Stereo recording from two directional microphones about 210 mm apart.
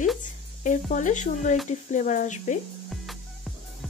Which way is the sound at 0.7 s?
35° left (ahead or behind).